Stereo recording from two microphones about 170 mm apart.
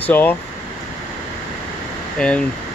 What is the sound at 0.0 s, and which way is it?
Speech, 10° left (ahead or behind).